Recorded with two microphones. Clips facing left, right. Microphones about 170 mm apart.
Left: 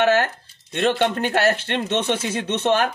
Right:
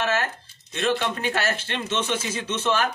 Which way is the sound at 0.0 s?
65° left (ahead or behind).